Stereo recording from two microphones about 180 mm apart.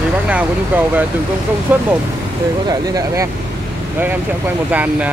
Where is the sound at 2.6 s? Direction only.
20° right (ahead or behind).